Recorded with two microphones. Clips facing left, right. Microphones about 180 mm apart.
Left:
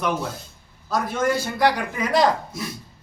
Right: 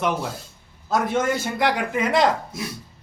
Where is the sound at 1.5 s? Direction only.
20° right (ahead or behind).